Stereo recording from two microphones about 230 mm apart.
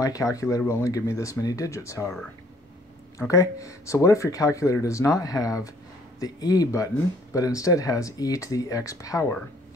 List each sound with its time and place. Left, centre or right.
0.0 s speech: centre
3.2 s speech: centre